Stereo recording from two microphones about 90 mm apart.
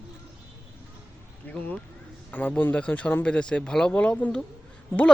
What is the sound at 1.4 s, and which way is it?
Speech, 20° left (ahead or behind).